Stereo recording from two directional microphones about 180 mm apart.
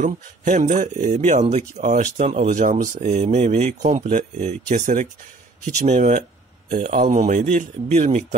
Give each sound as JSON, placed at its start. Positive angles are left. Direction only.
{"t": 0.0, "sound": "speech", "side_deg": -45}